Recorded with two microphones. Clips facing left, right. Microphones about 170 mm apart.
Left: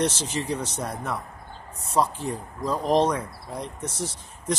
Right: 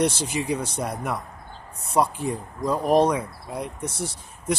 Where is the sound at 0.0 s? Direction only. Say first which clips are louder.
Right 2 dB; 10° right (ahead or behind).